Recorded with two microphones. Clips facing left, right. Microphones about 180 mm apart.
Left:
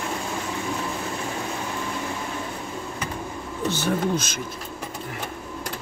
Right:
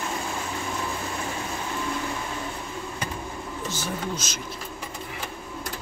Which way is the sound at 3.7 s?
55° left (ahead or behind).